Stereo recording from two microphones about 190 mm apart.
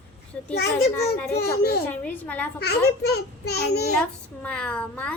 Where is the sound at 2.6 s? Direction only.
55° left (ahead or behind).